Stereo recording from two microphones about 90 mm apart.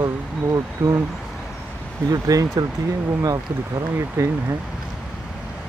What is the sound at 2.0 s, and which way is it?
Speech, 40° right (ahead or behind).